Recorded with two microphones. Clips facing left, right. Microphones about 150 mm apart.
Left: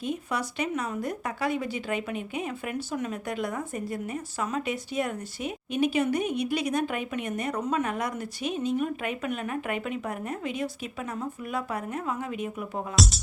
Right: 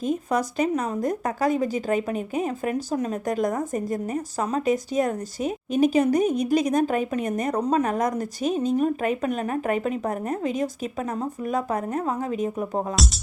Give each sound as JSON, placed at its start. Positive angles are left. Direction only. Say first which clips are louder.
{"t": 0.0, "sound": "speech", "louder": "right 6 dB", "side_deg": -45}